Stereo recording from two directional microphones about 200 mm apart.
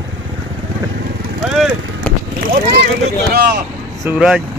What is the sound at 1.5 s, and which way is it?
Vehicle, centre (ahead or behind).